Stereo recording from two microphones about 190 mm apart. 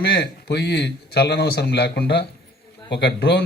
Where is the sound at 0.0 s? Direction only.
60° left (ahead or behind).